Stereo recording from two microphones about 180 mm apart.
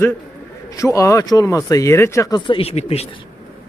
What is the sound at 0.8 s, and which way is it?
Speech, 15° left (ahead or behind).